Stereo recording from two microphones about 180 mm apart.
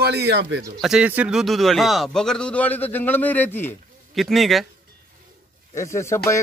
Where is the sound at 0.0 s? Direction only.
65° right (ahead or behind).